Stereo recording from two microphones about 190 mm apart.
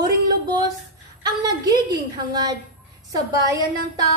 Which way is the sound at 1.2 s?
20° right (ahead or behind).